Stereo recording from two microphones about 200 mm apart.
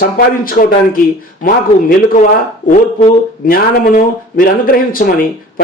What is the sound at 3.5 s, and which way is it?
A man's voice, 45° left (ahead or behind).